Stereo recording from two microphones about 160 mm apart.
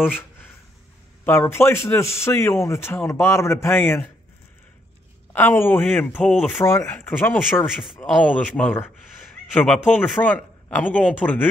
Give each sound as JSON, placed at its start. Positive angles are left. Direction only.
{"t": 0.0, "sound": "a sound", "side_deg": 10}
{"t": 1.2, "sound": "a man's voice", "side_deg": 15}
{"t": 5.3, "sound": "a man's voice", "side_deg": 15}
{"t": 7.6, "sound": "speech", "side_deg": -5}
{"t": 8.5, "sound": "a man's voice", "side_deg": 10}